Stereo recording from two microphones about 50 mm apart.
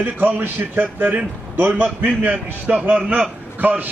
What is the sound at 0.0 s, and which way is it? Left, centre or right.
A man's voice, right.